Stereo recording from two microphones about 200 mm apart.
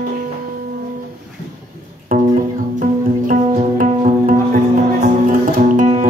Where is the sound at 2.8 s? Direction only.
40° right (ahead or behind).